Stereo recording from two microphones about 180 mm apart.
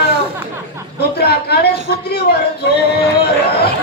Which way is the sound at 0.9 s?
65° left (ahead or behind).